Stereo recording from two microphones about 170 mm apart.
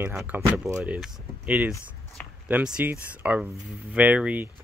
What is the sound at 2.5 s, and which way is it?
Speech, 5° right (ahead or behind).